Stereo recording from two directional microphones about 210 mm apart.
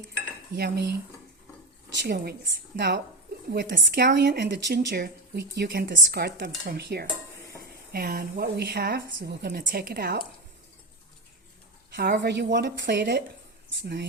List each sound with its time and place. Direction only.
0.5 s speech: 50° right (ahead or behind)
2.0 s speech: 50° right (ahead or behind)
11.9 s speech: 55° right (ahead or behind)